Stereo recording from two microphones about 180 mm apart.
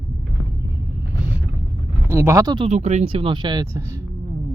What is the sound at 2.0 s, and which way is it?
Speech, 15° right (ahead or behind).